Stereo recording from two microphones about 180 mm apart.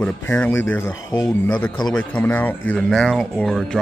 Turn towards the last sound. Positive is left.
turn(degrees=5)  # may be behind; listen again after turning